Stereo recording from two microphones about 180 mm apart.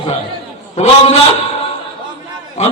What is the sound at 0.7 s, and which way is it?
Speech, 35° left (ahead or behind).